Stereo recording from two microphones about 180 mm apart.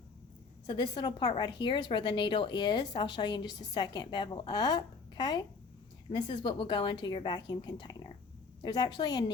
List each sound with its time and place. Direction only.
0.7 s a woman's voice: 25° left (ahead or behind)